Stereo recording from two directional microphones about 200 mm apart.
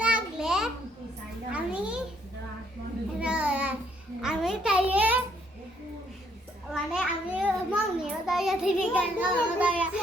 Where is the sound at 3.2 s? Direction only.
5° right (ahead or behind).